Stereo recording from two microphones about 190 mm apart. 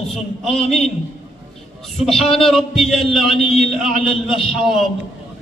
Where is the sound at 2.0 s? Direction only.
Centre (ahead or behind).